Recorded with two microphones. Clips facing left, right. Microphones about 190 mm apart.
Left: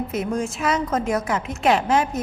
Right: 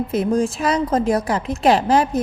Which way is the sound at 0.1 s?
35° right (ahead or behind).